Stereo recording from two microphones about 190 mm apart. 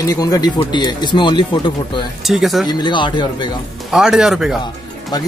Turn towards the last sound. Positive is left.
turn(degrees=20)  # may be behind; listen again after turning